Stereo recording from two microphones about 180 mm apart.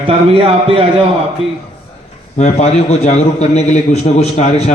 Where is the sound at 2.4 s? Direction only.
40° left (ahead or behind).